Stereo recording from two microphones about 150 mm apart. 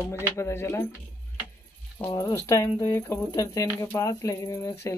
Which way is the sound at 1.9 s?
20° left (ahead or behind).